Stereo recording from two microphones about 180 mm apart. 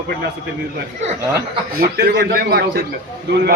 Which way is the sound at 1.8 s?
65° right (ahead or behind).